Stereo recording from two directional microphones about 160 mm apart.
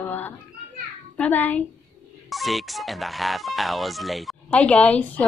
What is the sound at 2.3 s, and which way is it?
Speech, centre (ahead or behind).